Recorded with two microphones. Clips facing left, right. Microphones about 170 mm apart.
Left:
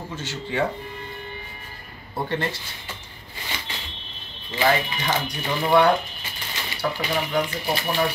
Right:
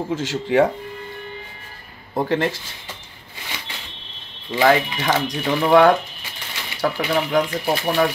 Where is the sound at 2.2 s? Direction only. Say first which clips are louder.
Right 6 dB; 90° right.